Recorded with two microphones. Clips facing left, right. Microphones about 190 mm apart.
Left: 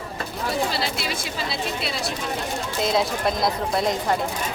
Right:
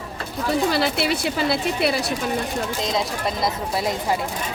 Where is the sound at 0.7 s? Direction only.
60° right (ahead or behind).